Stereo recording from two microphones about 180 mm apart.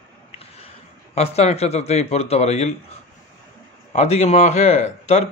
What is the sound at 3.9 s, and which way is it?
Speech, 35° left (ahead or behind).